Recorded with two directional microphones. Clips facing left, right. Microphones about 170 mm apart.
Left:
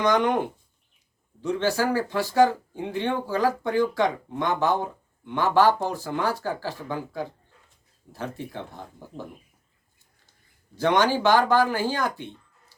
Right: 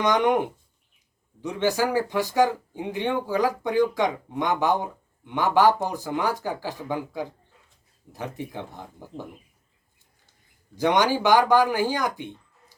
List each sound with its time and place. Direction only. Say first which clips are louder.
0.0 s speech: right 1 dB; 20° right (ahead or behind)
1.4 s speech: even; 15° right (ahead or behind)
10.8 s speech: even; 15° right (ahead or behind)